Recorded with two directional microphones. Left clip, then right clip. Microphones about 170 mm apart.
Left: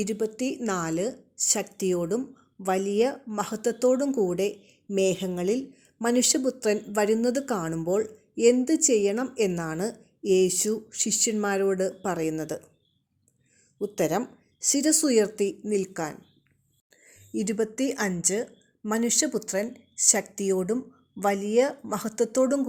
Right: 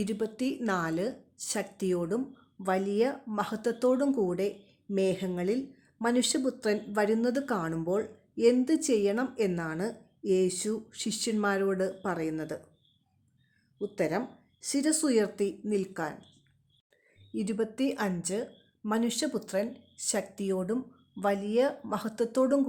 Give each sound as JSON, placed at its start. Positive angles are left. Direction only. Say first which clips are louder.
{"t": 0.0, "sound": "a woman's voice", "louder": "left 4 dB", "side_deg": 10}
{"t": 13.7, "sound": "a woman's voice", "louder": "left 4 dB", "side_deg": 20}